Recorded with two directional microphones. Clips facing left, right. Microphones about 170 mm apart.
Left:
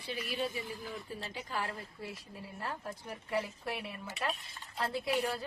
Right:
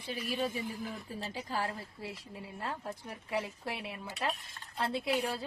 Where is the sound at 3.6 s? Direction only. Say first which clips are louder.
Even; 25° right (ahead or behind).